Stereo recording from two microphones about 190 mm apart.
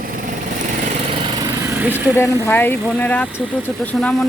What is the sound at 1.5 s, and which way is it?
Lawn mower, 10° right (ahead or behind).